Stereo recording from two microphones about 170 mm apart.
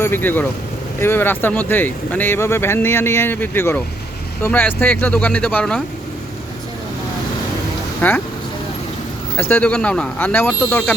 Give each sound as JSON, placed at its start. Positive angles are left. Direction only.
{"t": 0.0, "sound": "speech", "side_deg": 10}
{"t": 8.0, "sound": "speech", "side_deg": 10}
{"t": 9.4, "sound": "speech", "side_deg": 10}